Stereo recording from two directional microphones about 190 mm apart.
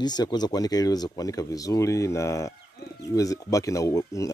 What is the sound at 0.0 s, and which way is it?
Speech, 20° left (ahead or behind).